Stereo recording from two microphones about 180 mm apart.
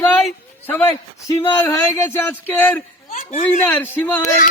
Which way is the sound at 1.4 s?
15° left (ahead or behind).